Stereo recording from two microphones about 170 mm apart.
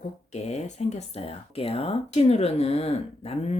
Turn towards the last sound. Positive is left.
turn(degrees=40)  # may be behind; listen again after turning